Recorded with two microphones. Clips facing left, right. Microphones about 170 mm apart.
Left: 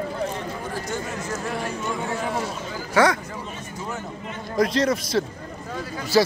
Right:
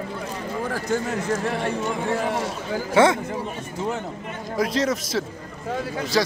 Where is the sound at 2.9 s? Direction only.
25° right (ahead or behind).